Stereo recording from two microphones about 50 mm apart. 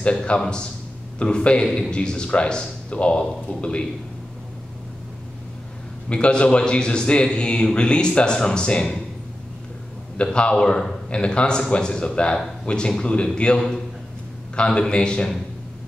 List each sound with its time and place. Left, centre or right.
0.0 s a man's voice: left
6.0 s a man's voice: left
10.1 s a man's voice: left